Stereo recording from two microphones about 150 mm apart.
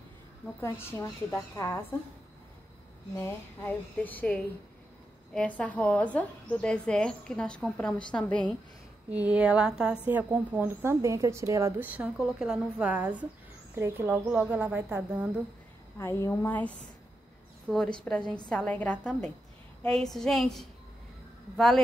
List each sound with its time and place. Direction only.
0.6 s a woman's voice: 15° left (ahead or behind)
3.2 s a woman's voice: 15° left (ahead or behind)
9.1 s a woman's voice: 10° right (ahead or behind)
16.0 s a woman's voice: 15° left (ahead or behind)